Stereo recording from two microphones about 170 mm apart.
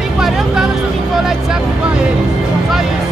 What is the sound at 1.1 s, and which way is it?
Vehicle, 5° right (ahead or behind).